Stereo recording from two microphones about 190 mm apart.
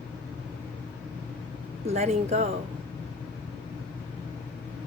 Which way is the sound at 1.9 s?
35° right (ahead or behind).